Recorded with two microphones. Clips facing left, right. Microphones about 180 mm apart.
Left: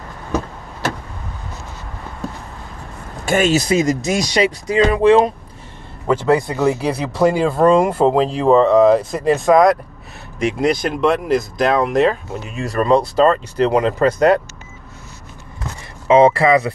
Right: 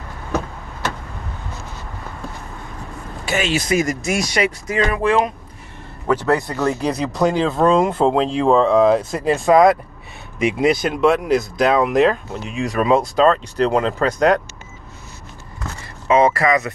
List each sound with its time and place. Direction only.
3.3 s speech: 45° left (ahead or behind)
3.6 s speech: 25° left (ahead or behind); by 14.4 s 5° left (ahead or behind)
16.1 s speech: 25° left (ahead or behind)